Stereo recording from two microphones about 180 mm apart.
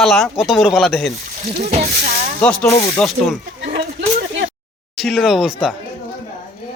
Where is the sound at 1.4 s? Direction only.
35° right (ahead or behind).